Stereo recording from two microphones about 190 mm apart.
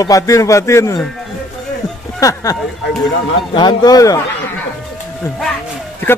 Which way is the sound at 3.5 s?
20° left (ahead or behind).